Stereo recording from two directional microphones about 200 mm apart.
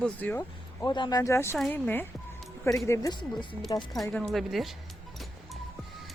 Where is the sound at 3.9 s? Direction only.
5° left (ahead or behind).